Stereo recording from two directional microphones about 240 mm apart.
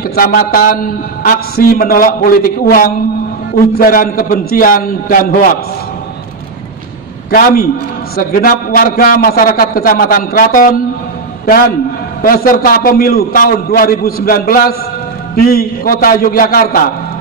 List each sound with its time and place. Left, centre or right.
0.1 s a man's voice: left
7.2 s a man's voice: left
12.2 s a man's voice: left